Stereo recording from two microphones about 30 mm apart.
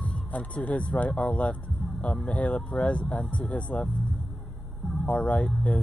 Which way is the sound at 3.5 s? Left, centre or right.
Left.